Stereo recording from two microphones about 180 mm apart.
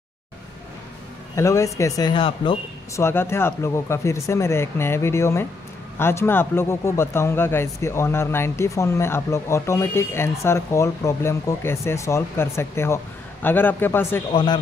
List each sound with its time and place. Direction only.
1.3 s speech: 15° left (ahead or behind)
3.0 s speech: 15° left (ahead or behind)
14.3 s speech: 25° left (ahead or behind)